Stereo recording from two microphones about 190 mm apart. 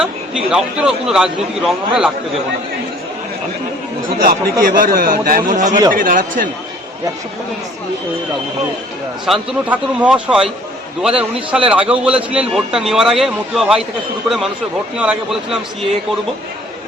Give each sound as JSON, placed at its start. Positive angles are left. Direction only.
{"t": 0.0, "sound": "a man's voice", "side_deg": -5}
{"t": 4.2, "sound": "a man's voice", "side_deg": -50}
{"t": 9.2, "sound": "a man's voice", "side_deg": 0}